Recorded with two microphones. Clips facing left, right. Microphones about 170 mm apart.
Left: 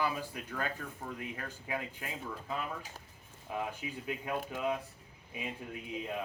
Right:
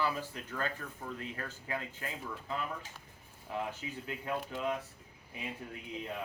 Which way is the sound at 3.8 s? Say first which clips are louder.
Left 1 dB; 20° left (ahead or behind).